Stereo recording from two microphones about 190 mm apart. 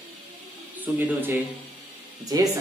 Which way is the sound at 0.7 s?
10° right (ahead or behind).